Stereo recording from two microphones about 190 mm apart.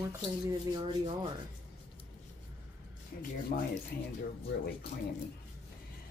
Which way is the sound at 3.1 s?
50° left (ahead or behind).